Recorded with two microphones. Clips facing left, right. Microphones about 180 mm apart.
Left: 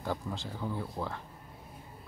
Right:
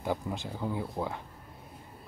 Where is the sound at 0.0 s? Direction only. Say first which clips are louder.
Right 3 dB; 15° right (ahead or behind).